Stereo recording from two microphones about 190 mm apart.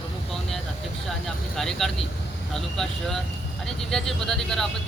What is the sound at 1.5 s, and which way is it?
Speech, centre (ahead or behind).